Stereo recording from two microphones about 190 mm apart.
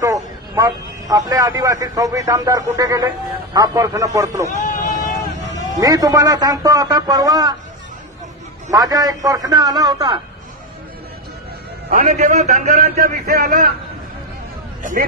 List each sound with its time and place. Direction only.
0.0 s a man's voice: 20° right (ahead or behind)
4.5 s a sound: 45° left (ahead or behind)
5.8 s a man's voice: 20° right (ahead or behind)
8.6 s a man's voice: 20° right (ahead or behind)
11.9 s a man's voice: 45° right (ahead or behind)
14.8 s speech: 45° right (ahead or behind)